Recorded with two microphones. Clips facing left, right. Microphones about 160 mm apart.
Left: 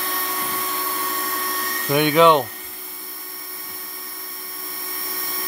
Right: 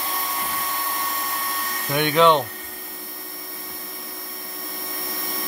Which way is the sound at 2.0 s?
10° left (ahead or behind).